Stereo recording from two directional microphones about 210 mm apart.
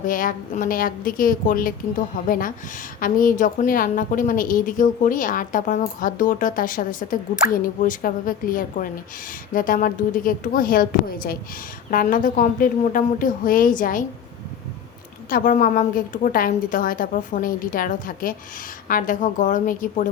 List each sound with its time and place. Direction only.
0.0 s a woman's voice: 40° left (ahead or behind)
15.3 s a woman's voice: 40° left (ahead or behind)